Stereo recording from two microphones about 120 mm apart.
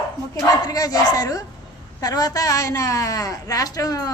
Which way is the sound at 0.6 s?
30° left (ahead or behind).